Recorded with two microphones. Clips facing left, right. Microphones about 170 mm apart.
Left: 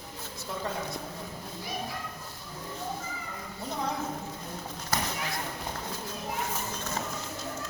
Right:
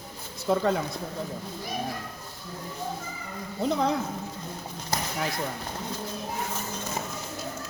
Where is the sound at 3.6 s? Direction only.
90° right.